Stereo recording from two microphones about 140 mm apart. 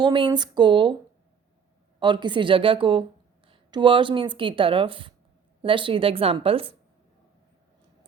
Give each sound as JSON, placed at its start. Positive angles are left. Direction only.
{"t": 0.0, "sound": "speech", "side_deg": -35}
{"t": 2.0, "sound": "speech", "side_deg": -35}